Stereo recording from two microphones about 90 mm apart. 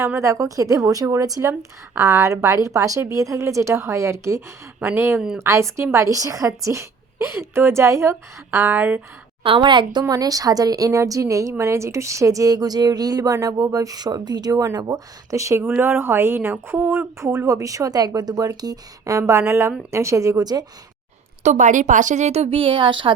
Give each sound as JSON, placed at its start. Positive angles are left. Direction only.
{"t": 0.0, "sound": "a woman's voice", "side_deg": -30}
{"t": 9.4, "sound": "a woman's voice", "side_deg": -70}
{"t": 10.1, "sound": "speech", "side_deg": -45}
{"t": 22.4, "sound": "speech", "side_deg": -85}